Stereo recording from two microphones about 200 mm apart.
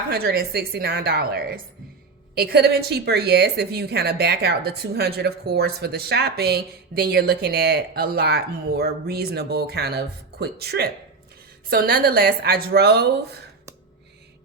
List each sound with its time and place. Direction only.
0.1 s a woman's voice: 50° right (ahead or behind)